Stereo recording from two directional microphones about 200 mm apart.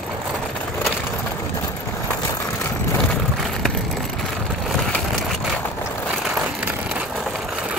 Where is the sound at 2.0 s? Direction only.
10° left (ahead or behind).